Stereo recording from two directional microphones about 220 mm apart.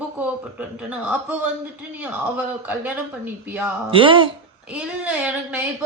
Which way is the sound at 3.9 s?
25° right (ahead or behind).